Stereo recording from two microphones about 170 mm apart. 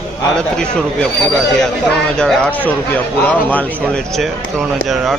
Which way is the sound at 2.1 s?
5° left (ahead or behind).